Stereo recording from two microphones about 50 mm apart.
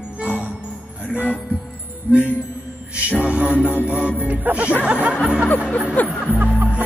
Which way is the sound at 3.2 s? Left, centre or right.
Right.